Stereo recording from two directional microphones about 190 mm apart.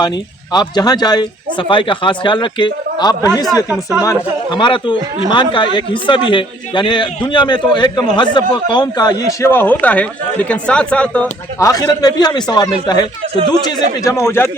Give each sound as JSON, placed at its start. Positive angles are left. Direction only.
{"t": 0.5, "sound": "a man's voice", "side_deg": 20}
{"t": 3.7, "sound": "speech", "side_deg": -10}
{"t": 4.0, "sound": "a man's voice", "side_deg": 20}